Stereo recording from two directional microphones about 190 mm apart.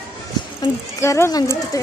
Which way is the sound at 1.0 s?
15° left (ahead or behind).